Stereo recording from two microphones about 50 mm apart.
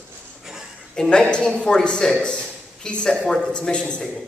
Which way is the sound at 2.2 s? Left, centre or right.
Left.